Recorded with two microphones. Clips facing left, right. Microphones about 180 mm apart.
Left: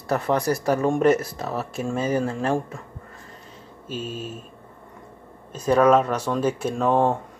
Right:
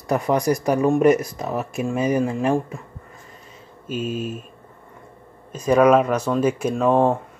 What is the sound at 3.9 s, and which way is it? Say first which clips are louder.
Speech: right 6 dB; 10° right (ahead or behind).